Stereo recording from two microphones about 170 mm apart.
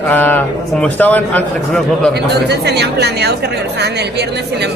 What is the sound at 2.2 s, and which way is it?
Speech, 75° right (ahead or behind).